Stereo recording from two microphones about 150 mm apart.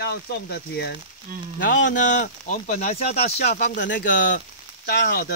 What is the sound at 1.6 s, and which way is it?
Speech, 65° left (ahead or behind).